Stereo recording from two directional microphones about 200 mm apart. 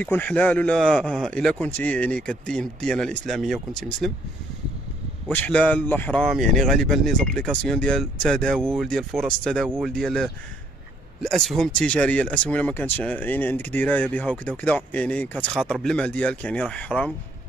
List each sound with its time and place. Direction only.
0.0 s speech: 10° left (ahead or behind)
5.3 s speech: 5° left (ahead or behind)
9.7 s speech: 10° right (ahead or behind)
9.9 s speech: centre (ahead or behind)